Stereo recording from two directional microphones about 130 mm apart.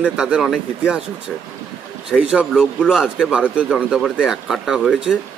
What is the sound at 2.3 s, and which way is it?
A man's voice, 5° left (ahead or behind).